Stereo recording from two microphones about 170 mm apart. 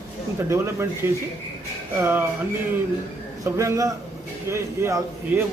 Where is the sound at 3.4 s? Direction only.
20° right (ahead or behind).